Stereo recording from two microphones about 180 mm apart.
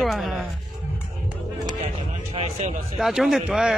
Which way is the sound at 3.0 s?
Centre (ahead or behind).